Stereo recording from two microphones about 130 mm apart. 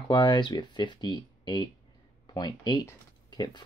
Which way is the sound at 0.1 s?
35° left (ahead or behind).